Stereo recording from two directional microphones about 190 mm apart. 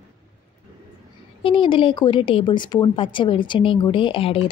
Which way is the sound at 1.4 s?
25° left (ahead or behind).